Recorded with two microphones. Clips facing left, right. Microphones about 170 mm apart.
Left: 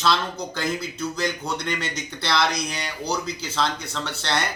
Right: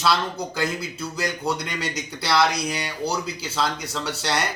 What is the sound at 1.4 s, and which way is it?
Speech, 35° right (ahead or behind).